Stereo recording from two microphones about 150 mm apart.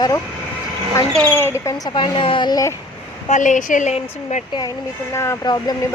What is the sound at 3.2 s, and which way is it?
Speech, 55° left (ahead or behind).